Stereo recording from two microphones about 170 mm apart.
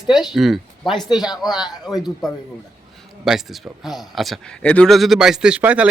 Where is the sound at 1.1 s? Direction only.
25° left (ahead or behind).